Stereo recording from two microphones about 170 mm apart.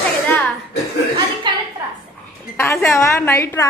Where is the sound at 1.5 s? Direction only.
25° right (ahead or behind).